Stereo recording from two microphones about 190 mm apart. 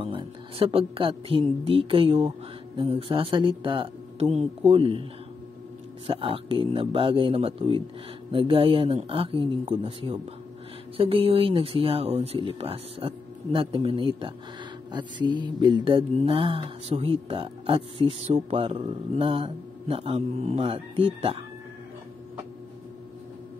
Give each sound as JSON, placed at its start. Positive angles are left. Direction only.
{"t": 0.0, "sound": "speech", "side_deg": -30}
{"t": 2.8, "sound": "mantra", "side_deg": -25}
{"t": 6.0, "sound": "mantra", "side_deg": -30}